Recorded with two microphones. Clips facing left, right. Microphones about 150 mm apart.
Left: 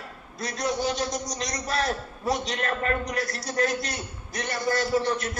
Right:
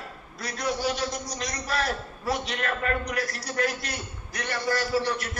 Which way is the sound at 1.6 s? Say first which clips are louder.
Left 1 dB; 25° left (ahead or behind).